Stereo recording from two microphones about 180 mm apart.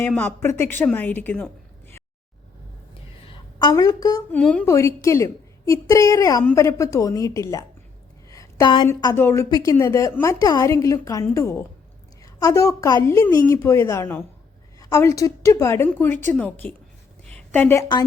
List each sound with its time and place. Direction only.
0.1 s a woman's voice: 10° left (ahead or behind)
3.6 s a woman's voice: 20° left (ahead or behind)
4.3 s a woman's voice: 5° left (ahead or behind)
8.3 s a sound: 15° left (ahead or behind)
8.9 s a woman's voice: 15° left (ahead or behind)
17.2 s a sound: 10° left (ahead or behind)